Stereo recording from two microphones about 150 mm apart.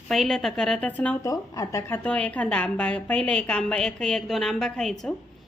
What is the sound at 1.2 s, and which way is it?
Speech, 20° left (ahead or behind).